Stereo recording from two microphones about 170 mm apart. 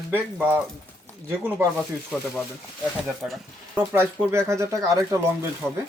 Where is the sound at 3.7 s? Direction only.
10° right (ahead or behind).